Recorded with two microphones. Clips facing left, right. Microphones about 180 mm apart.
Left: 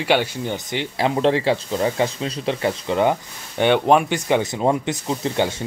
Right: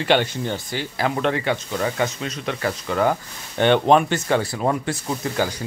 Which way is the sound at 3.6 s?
10° left (ahead or behind).